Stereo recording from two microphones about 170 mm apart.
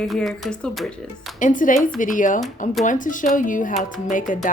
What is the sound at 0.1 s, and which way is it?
Speech, centre (ahead or behind).